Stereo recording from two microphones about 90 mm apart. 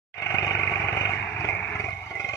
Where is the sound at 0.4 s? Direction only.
35° left (ahead or behind).